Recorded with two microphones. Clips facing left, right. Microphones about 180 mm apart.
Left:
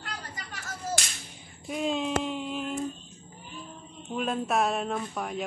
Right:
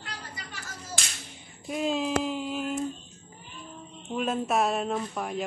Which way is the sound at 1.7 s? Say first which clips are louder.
Right 1 dB; centre (ahead or behind).